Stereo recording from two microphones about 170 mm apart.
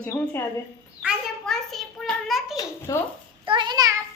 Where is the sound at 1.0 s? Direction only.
Centre (ahead or behind).